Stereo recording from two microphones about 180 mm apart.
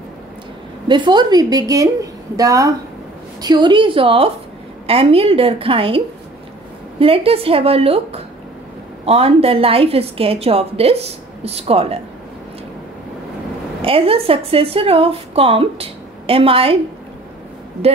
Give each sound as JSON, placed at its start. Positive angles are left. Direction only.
{"t": 0.8, "sound": "a woman's voice", "side_deg": -25}
{"t": 13.8, "sound": "a woman's voice", "side_deg": -30}